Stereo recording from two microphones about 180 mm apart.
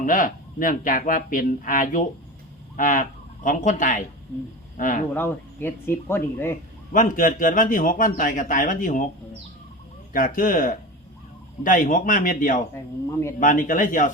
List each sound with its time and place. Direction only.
0.0 s a man's voice: 50° left (ahead or behind)
5.1 s speech: 10° left (ahead or behind)
6.9 s a man's voice: 50° left (ahead or behind)
10.1 s a man's voice: 50° left (ahead or behind)
12.7 s speech: 15° left (ahead or behind)
13.4 s a man's voice: 45° left (ahead or behind)